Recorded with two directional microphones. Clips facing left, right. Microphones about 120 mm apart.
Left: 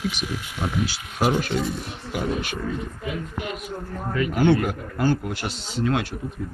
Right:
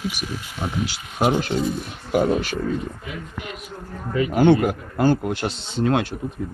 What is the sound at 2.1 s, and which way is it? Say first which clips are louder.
Speech: right 7 dB; 40° right (ahead or behind).